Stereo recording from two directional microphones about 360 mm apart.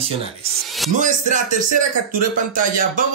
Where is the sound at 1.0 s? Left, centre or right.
Right.